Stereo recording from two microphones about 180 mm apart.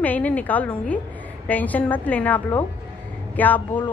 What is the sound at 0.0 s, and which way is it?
Speech, 10° left (ahead or behind).